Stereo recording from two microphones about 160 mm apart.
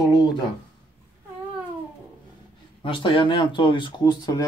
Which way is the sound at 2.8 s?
35° left (ahead or behind).